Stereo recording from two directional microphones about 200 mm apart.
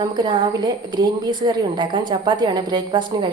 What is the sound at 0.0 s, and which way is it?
A woman's voice, 25° right (ahead or behind).